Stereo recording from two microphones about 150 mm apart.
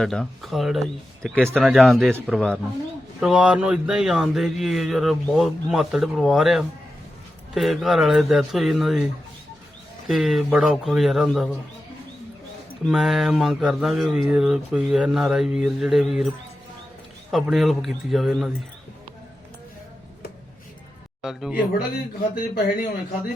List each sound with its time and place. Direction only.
0.0 s speech: centre (ahead or behind)
10.1 s speech: centre (ahead or behind)
12.9 s speech: centre (ahead or behind)
17.3 s speech: centre (ahead or behind)
21.2 s a man's voice: 5° right (ahead or behind)
22.4 s a man's voice: 75° left (ahead or behind)